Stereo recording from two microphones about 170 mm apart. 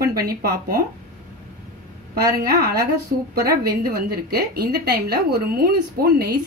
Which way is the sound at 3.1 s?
50° right (ahead or behind).